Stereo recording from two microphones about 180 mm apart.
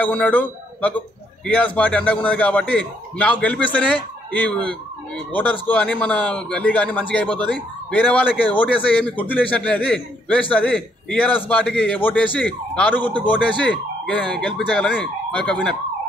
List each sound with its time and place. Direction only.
0.0 s a man's voice: 10° left (ahead or behind)